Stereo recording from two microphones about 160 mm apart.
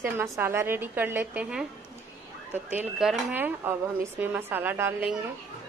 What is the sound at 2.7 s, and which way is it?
A woman's voice, centre (ahead or behind).